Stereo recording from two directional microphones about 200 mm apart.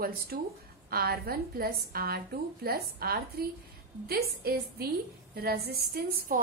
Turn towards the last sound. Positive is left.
turn(degrees=-45)  # may be behind; listen again after turning